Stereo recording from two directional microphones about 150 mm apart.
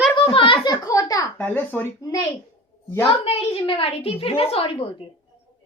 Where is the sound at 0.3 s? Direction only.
35° left (ahead or behind).